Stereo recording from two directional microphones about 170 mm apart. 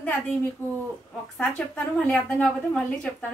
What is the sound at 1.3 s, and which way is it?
A woman's voice, 5° left (ahead or behind).